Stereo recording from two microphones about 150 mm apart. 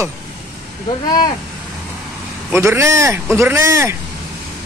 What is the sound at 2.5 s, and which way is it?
A man's voice, 15° right (ahead or behind).